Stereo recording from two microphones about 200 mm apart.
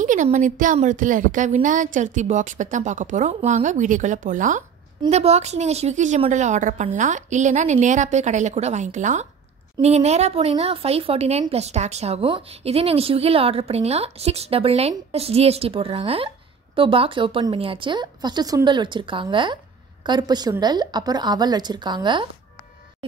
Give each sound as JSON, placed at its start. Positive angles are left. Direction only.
{"t": 0.0, "sound": "a woman's voice", "side_deg": -40}